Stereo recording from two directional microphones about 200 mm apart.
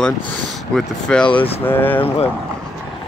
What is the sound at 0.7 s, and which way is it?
Speech, 5° left (ahead or behind).